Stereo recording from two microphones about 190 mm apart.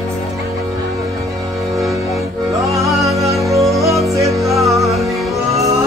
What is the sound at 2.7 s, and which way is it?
Music, 15° right (ahead or behind).